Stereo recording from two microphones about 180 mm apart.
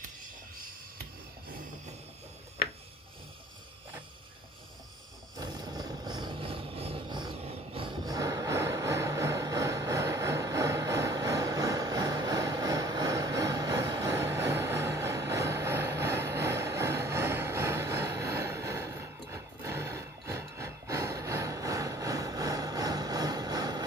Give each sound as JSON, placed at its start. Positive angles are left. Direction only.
{"t": 5.4, "sound": "vehicle", "side_deg": -20}